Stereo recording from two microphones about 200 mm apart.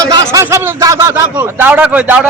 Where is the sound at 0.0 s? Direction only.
15° right (ahead or behind).